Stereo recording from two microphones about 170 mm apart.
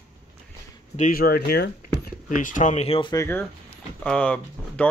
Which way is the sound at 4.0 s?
10° left (ahead or behind).